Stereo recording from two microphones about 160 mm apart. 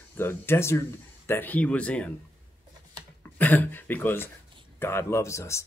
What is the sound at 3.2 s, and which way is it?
Speech, 10° left (ahead or behind).